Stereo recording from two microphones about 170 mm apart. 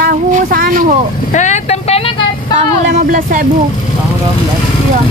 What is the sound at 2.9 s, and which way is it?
Speech, 55° right (ahead or behind).